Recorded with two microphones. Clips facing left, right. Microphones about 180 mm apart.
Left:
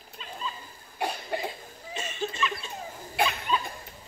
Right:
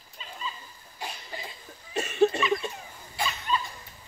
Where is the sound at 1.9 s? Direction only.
60° right (ahead or behind).